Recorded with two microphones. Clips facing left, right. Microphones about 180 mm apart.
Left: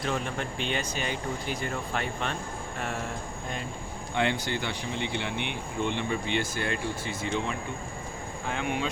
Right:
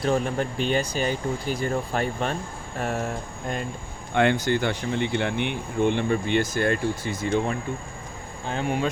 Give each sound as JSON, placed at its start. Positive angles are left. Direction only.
{"t": 0.0, "sound": "speech", "side_deg": -40}
{"t": 4.1, "sound": "speech", "side_deg": -55}